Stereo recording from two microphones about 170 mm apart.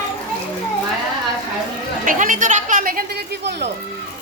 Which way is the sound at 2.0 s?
50° right (ahead or behind).